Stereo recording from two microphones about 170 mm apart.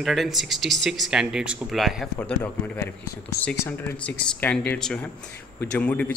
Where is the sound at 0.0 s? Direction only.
Centre (ahead or behind).